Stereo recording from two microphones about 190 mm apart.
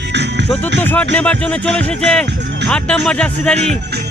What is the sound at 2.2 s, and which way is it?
Speech, 65° right (ahead or behind).